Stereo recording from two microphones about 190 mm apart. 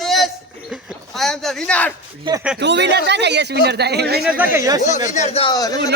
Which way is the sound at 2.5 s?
65° right (ahead or behind).